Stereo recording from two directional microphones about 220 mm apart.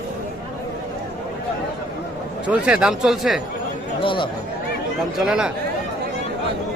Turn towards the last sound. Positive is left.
turn(degrees=-5)  # may be behind; listen again after turning